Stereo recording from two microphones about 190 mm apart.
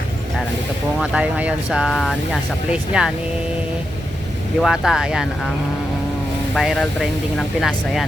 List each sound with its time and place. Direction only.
0.9 s speech: centre (ahead or behind)
4.6 s speech: centre (ahead or behind)
6.5 s speech: centre (ahead or behind)